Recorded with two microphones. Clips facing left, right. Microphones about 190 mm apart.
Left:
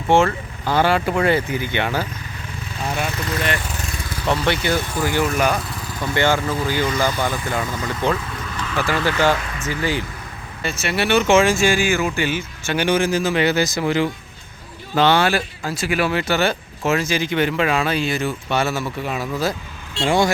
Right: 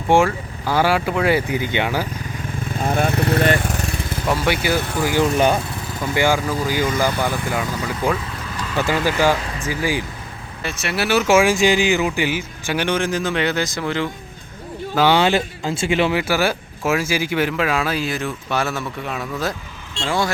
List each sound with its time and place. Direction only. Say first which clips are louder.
0.1 s speech: even; 10° right (ahead or behind)
2.6 s lawn mower: right 5 dB; 50° right (ahead or behind)
4.3 s speech: even; 10° right (ahead or behind)
5.2 s speech: right 5 dB; 30° right (ahead or behind)
6.0 s speech: even; 10° right (ahead or behind)
8.7 s speech: right 1 dB; 20° right (ahead or behind)
10.6 s speech: left 1 dB; centre (ahead or behind)
12.7 s speech: left 2 dB; 5° left (ahead or behind)
14.9 s speech: right 1 dB; 10° right (ahead or behind); by 20.1 s 5° left (ahead or behind)
20.1 s speech: left 4 dB; 20° left (ahead or behind)